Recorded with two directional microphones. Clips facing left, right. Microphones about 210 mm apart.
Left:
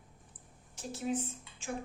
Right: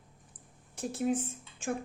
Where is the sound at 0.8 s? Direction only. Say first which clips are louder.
Right 4 dB; 55° right (ahead or behind).